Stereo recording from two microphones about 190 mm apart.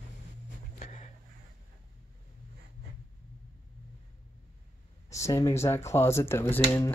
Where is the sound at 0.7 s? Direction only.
35° left (ahead or behind).